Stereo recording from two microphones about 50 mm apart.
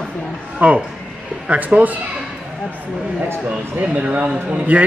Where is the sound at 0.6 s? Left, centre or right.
Right.